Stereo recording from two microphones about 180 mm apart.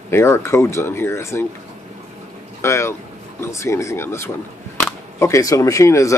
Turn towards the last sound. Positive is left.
turn(degrees=15)  # may be behind; listen again after turning